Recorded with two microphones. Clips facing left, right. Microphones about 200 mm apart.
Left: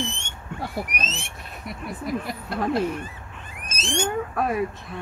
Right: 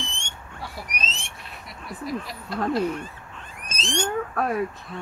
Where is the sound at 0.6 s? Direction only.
50° left (ahead or behind).